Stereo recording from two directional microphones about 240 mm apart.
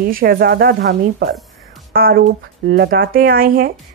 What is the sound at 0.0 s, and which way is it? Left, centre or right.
Speech, right.